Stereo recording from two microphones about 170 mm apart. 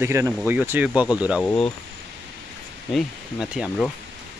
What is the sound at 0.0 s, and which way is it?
Speech, 15° right (ahead or behind).